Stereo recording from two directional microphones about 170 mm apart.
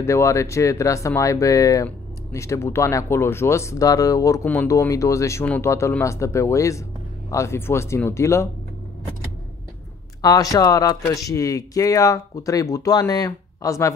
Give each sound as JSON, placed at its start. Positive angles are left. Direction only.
{"t": 0.0, "sound": "speech", "side_deg": 15}
{"t": 10.2, "sound": "speech", "side_deg": 20}